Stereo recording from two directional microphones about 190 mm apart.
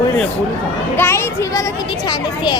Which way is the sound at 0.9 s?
10° left (ahead or behind).